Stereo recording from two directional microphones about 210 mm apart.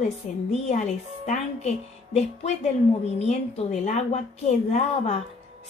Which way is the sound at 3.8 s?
30° left (ahead or behind).